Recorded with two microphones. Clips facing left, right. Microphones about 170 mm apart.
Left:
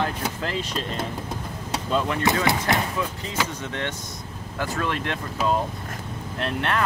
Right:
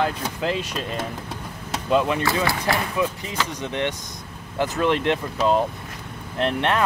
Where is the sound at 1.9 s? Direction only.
15° right (ahead or behind).